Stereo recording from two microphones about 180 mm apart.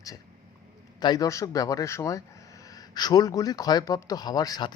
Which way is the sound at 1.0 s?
20° left (ahead or behind).